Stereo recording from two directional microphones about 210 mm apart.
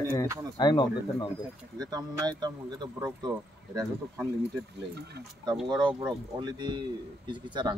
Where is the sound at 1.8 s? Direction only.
20° right (ahead or behind).